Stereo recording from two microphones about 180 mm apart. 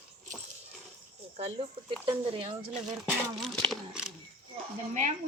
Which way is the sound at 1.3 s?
35° right (ahead or behind).